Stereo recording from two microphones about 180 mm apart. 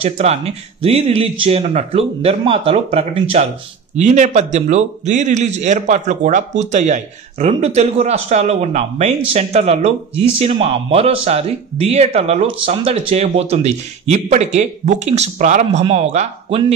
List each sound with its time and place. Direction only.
0.0 s speech: 35° right (ahead or behind)